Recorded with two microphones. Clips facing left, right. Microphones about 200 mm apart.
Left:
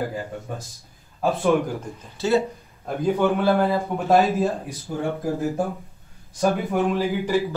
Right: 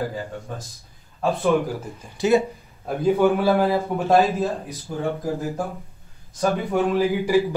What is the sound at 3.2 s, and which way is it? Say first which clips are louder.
A man's voice: right 1 dB; centre (ahead or behind).